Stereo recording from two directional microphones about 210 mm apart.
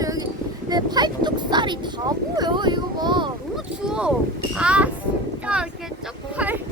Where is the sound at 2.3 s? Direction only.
20° right (ahead or behind).